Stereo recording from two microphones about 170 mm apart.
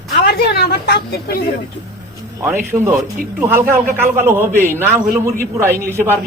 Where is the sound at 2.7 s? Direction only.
15° right (ahead or behind).